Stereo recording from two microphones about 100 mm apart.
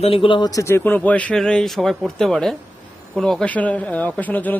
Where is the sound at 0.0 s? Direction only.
70° left (ahead or behind); by 0.5 s 55° left (ahead or behind).